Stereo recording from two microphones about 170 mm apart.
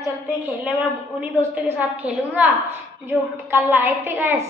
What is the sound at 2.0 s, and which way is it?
Speech, 5° right (ahead or behind).